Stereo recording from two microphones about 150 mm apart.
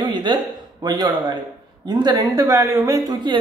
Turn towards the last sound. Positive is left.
turn(degrees=-25)  # may be behind; listen again after turning